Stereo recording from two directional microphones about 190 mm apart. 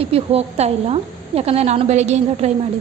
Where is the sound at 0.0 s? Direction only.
30° right (ahead or behind).